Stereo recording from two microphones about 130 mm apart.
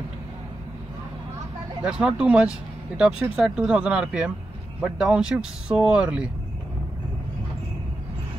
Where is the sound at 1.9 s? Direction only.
5° right (ahead or behind).